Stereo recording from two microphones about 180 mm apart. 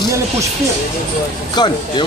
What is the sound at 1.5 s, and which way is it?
Speech, 25° left (ahead or behind).